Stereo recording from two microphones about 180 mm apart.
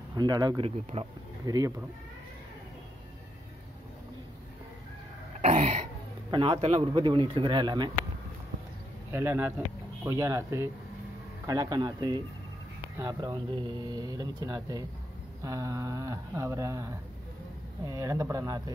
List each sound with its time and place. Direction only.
0.1 s speech: 20° right (ahead or behind)
0.9 s cough: 30° right (ahead or behind)
1.4 s speech: 20° right (ahead or behind)
5.4 s cough: 40° right (ahead or behind)
6.3 s speech: 30° right (ahead or behind)
9.1 s speech: 15° right (ahead or behind)